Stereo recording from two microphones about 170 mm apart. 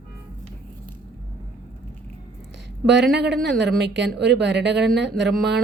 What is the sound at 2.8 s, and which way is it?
Speech, 85° right.